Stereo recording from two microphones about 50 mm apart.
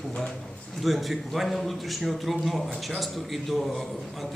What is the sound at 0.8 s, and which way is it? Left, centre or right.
A man's voice, centre.